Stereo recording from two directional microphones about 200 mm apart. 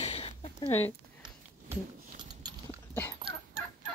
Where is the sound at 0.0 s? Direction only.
30° left (ahead or behind).